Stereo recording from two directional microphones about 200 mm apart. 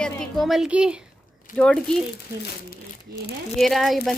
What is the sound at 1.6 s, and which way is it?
Speech, 5° left (ahead or behind).